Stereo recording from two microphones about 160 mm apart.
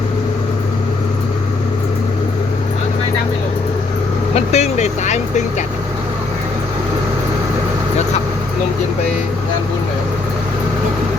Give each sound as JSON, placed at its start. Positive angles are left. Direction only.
{"t": 4.4, "sound": "vehicle", "side_deg": 45}